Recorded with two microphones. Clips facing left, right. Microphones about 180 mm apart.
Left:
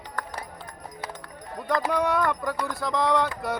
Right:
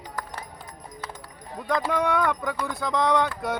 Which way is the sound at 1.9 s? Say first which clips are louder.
Right 1 dB; centre (ahead or behind).